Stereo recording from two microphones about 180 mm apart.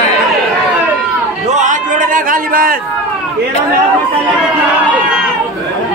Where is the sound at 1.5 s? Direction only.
45° right (ahead or behind).